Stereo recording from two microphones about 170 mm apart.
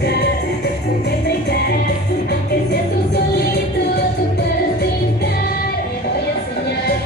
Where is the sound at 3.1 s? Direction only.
75° left (ahead or behind).